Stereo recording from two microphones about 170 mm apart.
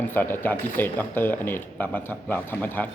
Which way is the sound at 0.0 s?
10° left (ahead or behind).